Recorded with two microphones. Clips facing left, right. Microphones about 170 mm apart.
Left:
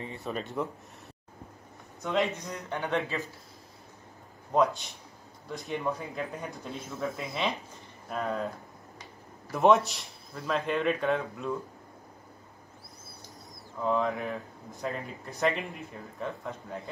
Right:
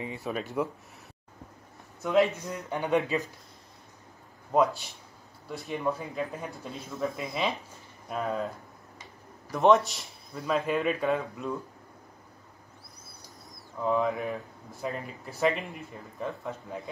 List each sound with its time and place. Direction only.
0.2 s speech: centre (ahead or behind)
2.0 s speech: centre (ahead or behind)
2.8 s a man's voice: 15° right (ahead or behind)
5.5 s speech: centre (ahead or behind)
9.5 s speech: centre (ahead or behind)
13.8 s speech: centre (ahead or behind)